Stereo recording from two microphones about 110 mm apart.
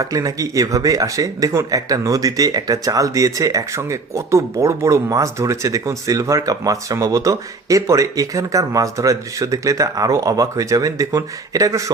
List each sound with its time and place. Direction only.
0.0 s a man's voice: 30° right (ahead or behind)